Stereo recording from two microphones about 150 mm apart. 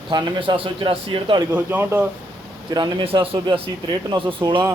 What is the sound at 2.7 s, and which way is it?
A man's voice, 30° right (ahead or behind).